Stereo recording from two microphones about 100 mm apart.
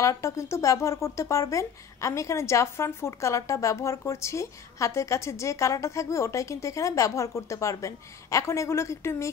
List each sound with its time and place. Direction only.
0.0 s speech: 30° left (ahead or behind)